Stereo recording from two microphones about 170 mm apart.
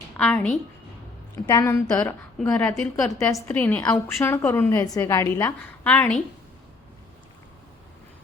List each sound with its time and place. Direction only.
0.2 s a woman's voice: 10° left (ahead or behind)
1.5 s a woman's voice: 20° left (ahead or behind)